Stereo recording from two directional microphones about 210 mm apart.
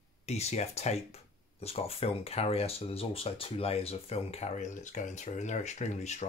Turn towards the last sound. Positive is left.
turn(degrees=35)  # may be behind; listen again after turning